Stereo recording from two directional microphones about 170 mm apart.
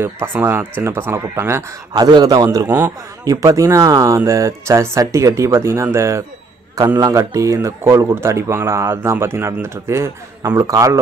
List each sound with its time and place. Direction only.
0.0 s a man's voice: 15° right (ahead or behind)